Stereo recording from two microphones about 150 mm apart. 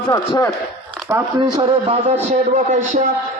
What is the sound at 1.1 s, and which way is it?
Speech, 20° right (ahead or behind).